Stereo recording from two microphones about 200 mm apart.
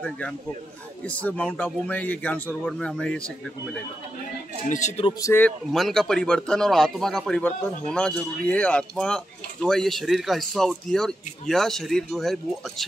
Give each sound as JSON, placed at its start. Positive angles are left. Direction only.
{"t": 1.0, "sound": "speech", "side_deg": 5}
{"t": 4.6, "sound": "a man's voice", "side_deg": 35}
{"t": 5.2, "sound": "a man's voice", "side_deg": 10}